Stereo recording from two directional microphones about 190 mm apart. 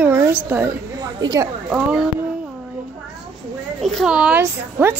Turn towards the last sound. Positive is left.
turn(degrees=-10)  # may be behind; listen again after turning